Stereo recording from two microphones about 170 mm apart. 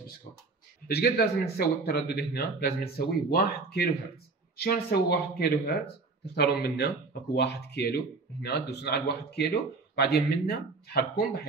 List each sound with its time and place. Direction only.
0.8 s speech: 65° left (ahead or behind)
6.2 s speech: 80° left